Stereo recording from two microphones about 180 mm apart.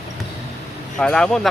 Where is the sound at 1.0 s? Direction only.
5° left (ahead or behind).